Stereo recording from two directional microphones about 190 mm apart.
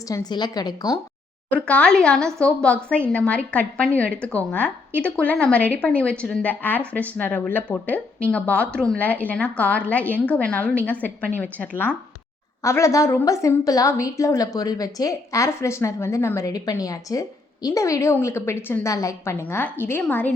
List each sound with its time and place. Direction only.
0.1 s a woman's voice: 20° left (ahead or behind)
1.5 s a woman's voice: 5° left (ahead or behind)